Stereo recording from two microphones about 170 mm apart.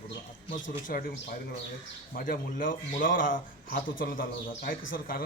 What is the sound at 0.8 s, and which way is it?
Speech, 55° left (ahead or behind).